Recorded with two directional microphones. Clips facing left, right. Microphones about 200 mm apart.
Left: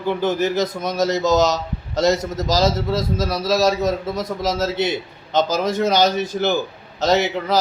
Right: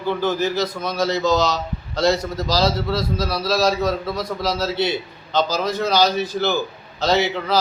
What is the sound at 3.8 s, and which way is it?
Speech, 20° left (ahead or behind).